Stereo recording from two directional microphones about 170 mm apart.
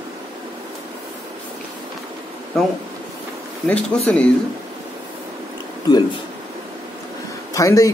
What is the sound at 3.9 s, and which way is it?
Speech, 5° left (ahead or behind).